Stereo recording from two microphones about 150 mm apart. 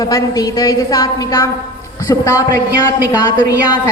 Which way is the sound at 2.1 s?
20° left (ahead or behind).